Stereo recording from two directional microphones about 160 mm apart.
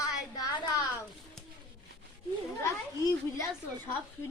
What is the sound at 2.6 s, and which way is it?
Speech, 20° left (ahead or behind).